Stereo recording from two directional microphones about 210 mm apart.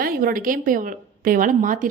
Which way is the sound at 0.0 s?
45° right (ahead or behind).